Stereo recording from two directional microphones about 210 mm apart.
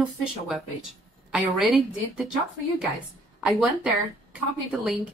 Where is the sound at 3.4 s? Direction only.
5° right (ahead or behind).